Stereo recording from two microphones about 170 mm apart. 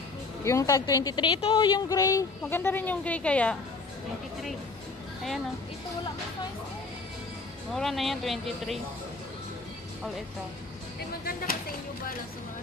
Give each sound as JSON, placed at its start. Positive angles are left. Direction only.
{"t": 0.4, "sound": "a woman's voice", "side_deg": 20}
{"t": 7.7, "sound": "speech", "side_deg": 0}